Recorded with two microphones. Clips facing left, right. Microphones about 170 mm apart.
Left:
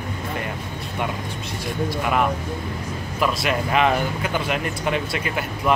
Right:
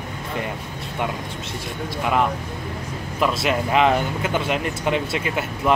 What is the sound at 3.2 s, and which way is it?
Speech, 25° right (ahead or behind).